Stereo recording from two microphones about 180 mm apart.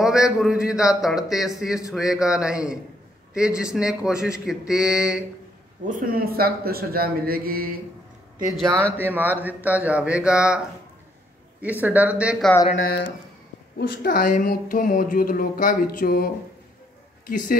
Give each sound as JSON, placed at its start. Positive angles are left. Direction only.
{"t": 0.0, "sound": "speech", "side_deg": -5}
{"t": 5.9, "sound": "a man's voice", "side_deg": -50}
{"t": 8.5, "sound": "speech", "side_deg": 5}
{"t": 8.9, "sound": "speech", "side_deg": -10}
{"t": 11.8, "sound": "speech", "side_deg": -10}
{"t": 12.7, "sound": "speech", "side_deg": 65}
{"t": 17.3, "sound": "speech", "side_deg": 50}